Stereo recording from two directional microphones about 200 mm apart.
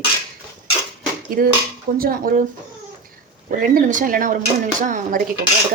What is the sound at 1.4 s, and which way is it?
Speech, 45° right (ahead or behind).